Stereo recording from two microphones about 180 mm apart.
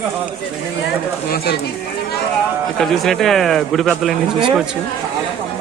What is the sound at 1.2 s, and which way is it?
Speech, 60° left (ahead or behind).